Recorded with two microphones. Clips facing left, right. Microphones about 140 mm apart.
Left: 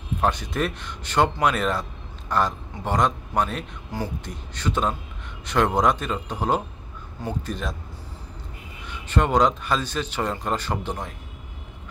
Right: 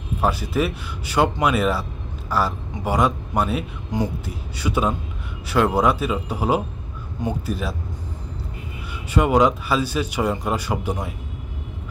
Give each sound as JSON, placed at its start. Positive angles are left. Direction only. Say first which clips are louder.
{"t": 0.2, "sound": "speech", "louder": "right 3 dB", "side_deg": -5}
{"t": 9.1, "sound": "speech", "louder": "right 3 dB", "side_deg": -10}